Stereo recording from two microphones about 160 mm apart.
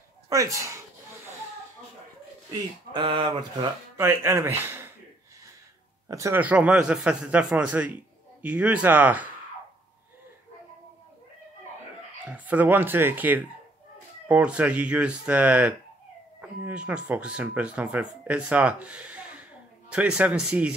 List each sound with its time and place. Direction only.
0.3 s speech: 20° right (ahead or behind)
2.9 s speech: 30° right (ahead or behind)
3.9 s speech: 15° right (ahead or behind)
6.0 s speech: 20° right (ahead or behind)
12.3 s speech: 10° right (ahead or behind)